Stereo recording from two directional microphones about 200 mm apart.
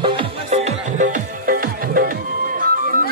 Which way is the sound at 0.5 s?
40° right (ahead or behind).